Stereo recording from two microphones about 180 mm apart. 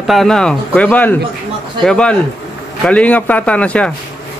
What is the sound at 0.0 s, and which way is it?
A man's voice, centre (ahead or behind).